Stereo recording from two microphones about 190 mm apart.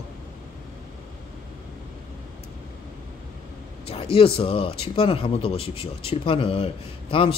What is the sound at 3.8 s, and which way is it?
Speech, 30° left (ahead or behind).